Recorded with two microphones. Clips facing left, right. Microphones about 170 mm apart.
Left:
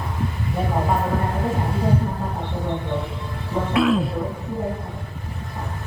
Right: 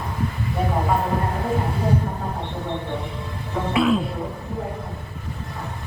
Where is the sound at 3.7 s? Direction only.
Centre (ahead or behind).